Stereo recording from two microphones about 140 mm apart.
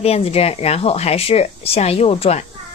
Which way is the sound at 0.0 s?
45° left (ahead or behind).